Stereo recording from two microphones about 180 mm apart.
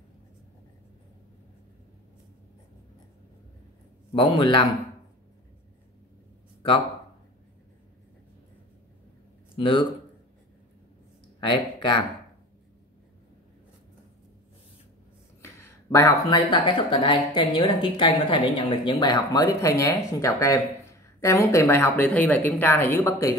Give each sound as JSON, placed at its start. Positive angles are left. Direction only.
{"t": 4.1, "sound": "a woman's voice", "side_deg": 30}
{"t": 6.6, "sound": "a woman's voice", "side_deg": 30}
{"t": 9.6, "sound": "a woman's voice", "side_deg": 30}
{"t": 11.3, "sound": "speech", "side_deg": 25}
{"t": 15.4, "sound": "a sound", "side_deg": 15}
{"t": 16.3, "sound": "a woman's voice", "side_deg": 30}